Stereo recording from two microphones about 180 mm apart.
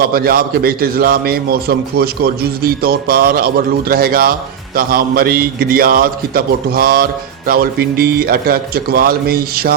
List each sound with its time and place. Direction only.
0.1 s a man's voice: 55° right (ahead or behind)